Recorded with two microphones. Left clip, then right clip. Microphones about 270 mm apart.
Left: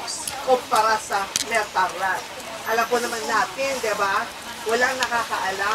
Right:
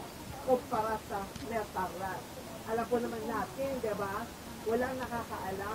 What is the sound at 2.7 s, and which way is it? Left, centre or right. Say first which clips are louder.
Speech: left 11 dB; centre.